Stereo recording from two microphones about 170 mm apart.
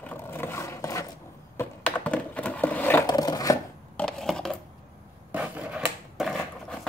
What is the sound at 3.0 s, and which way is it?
Filing, 25° left (ahead or behind).